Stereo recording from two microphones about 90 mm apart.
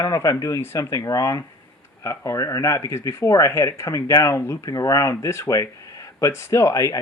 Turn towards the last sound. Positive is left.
turn(degrees=40)  # may be behind; listen again after turning